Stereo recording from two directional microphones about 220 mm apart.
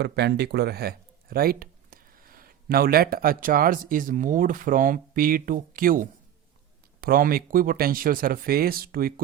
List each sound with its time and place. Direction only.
0.0 s speech: 50° right (ahead or behind)